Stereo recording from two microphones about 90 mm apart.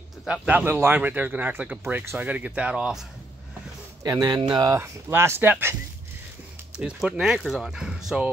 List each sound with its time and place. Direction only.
0.3 s speech: 15° right (ahead or behind)
4.1 s a man's voice: 40° right (ahead or behind)
4.8 s speech: 30° right (ahead or behind)
6.8 s speech: 10° right (ahead or behind)